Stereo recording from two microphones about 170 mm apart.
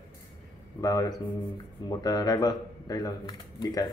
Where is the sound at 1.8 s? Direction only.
25° left (ahead or behind).